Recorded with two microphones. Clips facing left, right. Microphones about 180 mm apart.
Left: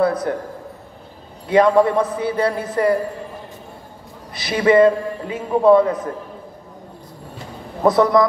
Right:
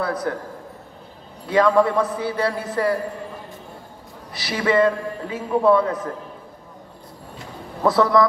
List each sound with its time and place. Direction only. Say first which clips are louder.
0.0 s a man's voice: left 6 dB; 20° left (ahead or behind)
1.5 s a man's voice: left 3 dB; 20° left (ahead or behind)
4.3 s a man's voice: left 6 dB; 20° left (ahead or behind)
7.8 s speech: left 3 dB; 20° left (ahead or behind)